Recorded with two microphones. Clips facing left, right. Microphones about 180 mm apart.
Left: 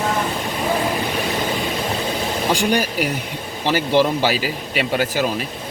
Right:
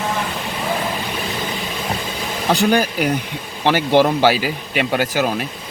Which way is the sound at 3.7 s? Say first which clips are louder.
Right 3 dB; 50° right (ahead or behind).